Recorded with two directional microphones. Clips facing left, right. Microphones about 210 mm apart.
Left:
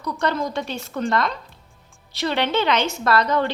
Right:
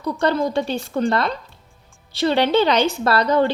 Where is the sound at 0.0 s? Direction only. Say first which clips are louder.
Right 4 dB; 30° right (ahead or behind).